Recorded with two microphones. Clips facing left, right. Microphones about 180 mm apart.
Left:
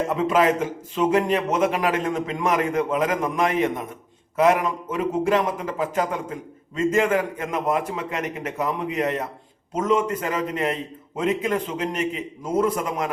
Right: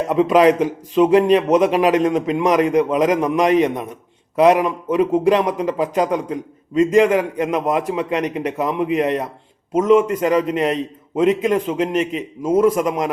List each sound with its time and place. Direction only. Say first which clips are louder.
0.1 s a man's voice: right 9 dB; 20° right (ahead or behind)